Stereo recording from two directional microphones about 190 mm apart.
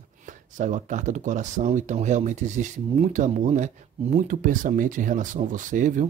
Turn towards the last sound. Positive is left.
turn(degrees=-45)  # may be behind; listen again after turning